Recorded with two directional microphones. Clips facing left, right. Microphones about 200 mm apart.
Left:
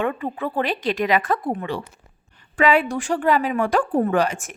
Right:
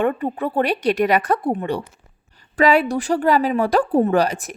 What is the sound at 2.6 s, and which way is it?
A woman's voice, 40° right (ahead or behind).